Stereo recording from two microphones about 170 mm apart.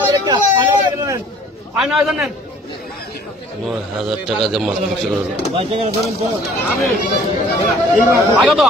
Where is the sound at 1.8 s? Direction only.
Centre (ahead or behind).